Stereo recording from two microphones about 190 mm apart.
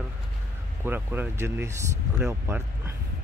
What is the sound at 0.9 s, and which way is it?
Speech, 10° right (ahead or behind).